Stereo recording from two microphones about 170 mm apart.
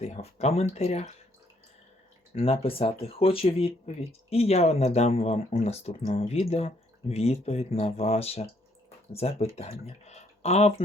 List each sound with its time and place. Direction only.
0.0 s speech: 40° left (ahead or behind)
2.3 s speech: 35° left (ahead or behind)